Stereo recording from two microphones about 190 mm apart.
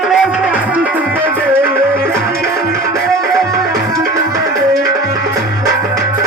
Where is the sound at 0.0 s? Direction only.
5° right (ahead or behind).